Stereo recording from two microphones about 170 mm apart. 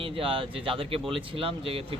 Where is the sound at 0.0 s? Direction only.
30° right (ahead or behind).